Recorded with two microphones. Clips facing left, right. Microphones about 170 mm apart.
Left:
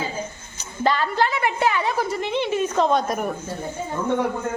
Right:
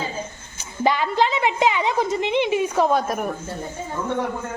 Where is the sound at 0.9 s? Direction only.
15° right (ahead or behind).